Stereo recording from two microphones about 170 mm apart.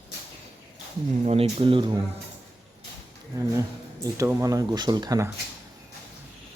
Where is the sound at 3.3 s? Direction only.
20° right (ahead or behind).